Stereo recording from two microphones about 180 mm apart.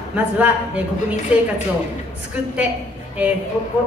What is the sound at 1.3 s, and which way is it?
Speech, 5° right (ahead or behind).